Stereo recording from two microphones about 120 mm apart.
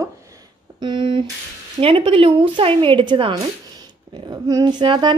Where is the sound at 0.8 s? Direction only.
40° right (ahead or behind).